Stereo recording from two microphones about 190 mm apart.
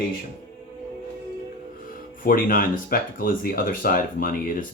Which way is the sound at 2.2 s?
50° left (ahead or behind).